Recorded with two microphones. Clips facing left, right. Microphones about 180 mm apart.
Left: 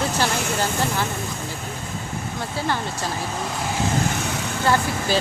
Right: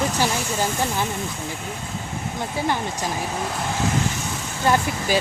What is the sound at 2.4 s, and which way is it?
Speech, 15° right (ahead or behind).